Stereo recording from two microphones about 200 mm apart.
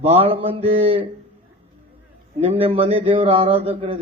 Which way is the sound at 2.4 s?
30° right (ahead or behind).